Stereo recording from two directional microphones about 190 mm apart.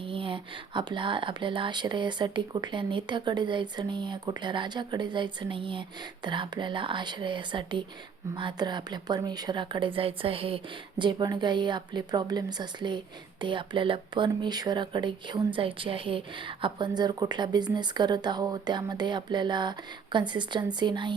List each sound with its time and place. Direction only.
0.0 s speech: 30° right (ahead or behind)